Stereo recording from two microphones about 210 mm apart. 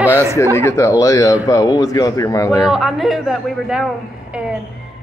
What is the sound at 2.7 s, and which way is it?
A woman's voice, centre (ahead or behind).